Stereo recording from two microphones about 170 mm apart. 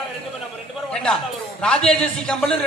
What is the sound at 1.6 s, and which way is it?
Speech, 5° left (ahead or behind).